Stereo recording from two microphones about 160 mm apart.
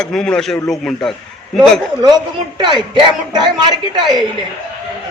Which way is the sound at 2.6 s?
30° right (ahead or behind).